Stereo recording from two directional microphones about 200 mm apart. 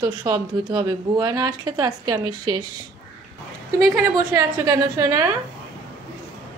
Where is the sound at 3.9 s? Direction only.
15° right (ahead or behind).